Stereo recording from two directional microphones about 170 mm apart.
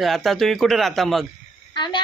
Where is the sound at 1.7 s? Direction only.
25° left (ahead or behind).